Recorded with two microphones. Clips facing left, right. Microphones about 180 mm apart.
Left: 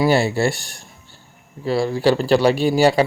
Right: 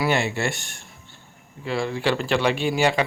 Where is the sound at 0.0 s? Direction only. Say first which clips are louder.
Left 6 dB; 35° left (ahead or behind).